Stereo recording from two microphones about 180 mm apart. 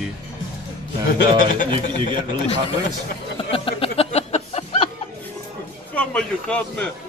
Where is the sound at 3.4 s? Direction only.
30° left (ahead or behind).